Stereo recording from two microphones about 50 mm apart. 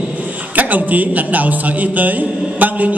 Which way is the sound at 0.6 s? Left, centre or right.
Right.